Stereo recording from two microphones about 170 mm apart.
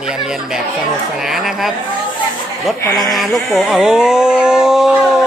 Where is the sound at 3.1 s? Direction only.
Centre (ahead or behind).